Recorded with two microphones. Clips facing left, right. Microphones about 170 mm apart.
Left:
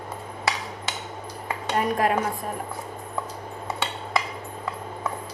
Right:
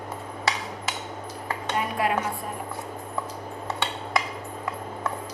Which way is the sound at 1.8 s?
45° left (ahead or behind).